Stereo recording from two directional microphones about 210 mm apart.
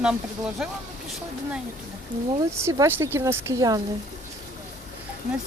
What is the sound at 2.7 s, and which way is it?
Speech, 10° right (ahead or behind).